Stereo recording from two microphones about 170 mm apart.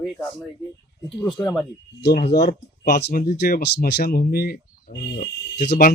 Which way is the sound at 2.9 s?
70° left (ahead or behind).